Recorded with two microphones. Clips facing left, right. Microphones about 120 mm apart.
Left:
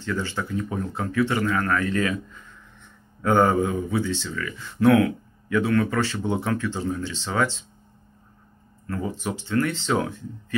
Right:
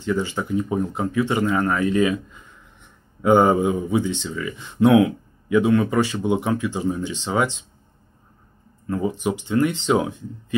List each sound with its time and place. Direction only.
0.0 s speech: 15° right (ahead or behind)
8.8 s speech: 15° right (ahead or behind)